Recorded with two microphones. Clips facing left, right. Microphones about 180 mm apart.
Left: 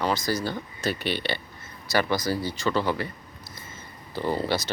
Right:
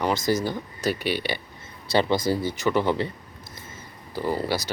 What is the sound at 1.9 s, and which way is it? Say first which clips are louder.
Speech: right 3 dB; 25° right (ahead or behind).